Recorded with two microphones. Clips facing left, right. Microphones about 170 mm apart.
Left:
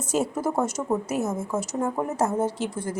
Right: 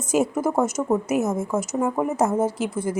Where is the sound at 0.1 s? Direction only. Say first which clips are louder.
Right 4 dB; 10° right (ahead or behind).